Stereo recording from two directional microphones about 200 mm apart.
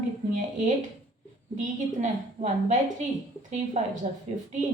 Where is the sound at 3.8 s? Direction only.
40° right (ahead or behind).